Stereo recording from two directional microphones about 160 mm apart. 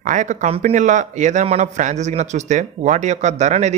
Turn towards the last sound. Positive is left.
turn(degrees=-45)  # may be behind; listen again after turning